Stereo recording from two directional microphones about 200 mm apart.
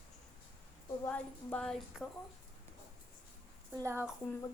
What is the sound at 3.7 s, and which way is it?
Speech, 15° right (ahead or behind).